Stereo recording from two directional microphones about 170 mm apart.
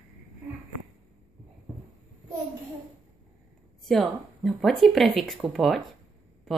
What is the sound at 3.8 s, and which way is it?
Speech, centre (ahead or behind).